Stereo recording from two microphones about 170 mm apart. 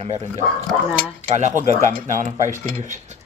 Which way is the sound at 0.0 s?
40° right (ahead or behind).